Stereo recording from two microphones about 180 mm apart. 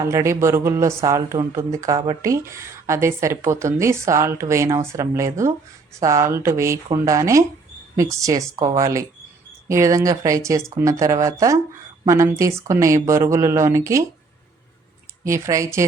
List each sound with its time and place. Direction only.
0.0 s a woman's voice: 15° right (ahead or behind)
15.3 s a woman's voice: 15° right (ahead or behind)